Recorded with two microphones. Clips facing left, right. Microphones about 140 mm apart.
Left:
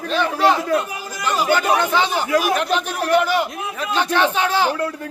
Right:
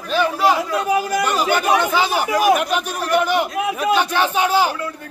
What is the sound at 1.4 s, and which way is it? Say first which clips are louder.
Speech: right 1 dB; 15° right (ahead or behind).